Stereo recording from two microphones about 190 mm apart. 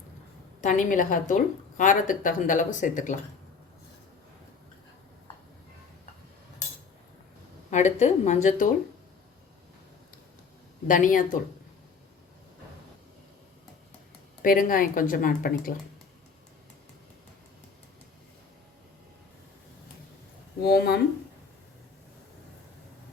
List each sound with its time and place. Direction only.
0.6 s speech: 40° left (ahead or behind)
7.7 s speech: 40° left (ahead or behind)
10.8 s speech: 45° left (ahead or behind)
14.4 s speech: 45° left (ahead or behind)
20.6 s speech: 55° left (ahead or behind)